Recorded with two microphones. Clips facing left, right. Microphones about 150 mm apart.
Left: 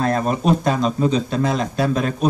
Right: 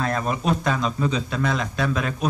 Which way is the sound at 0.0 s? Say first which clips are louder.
Left 5 dB; 35° left (ahead or behind).